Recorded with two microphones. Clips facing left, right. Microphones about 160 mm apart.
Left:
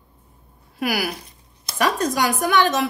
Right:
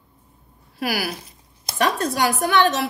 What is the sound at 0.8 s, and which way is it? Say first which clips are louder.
Speech: left 1 dB; 40° right (ahead or behind).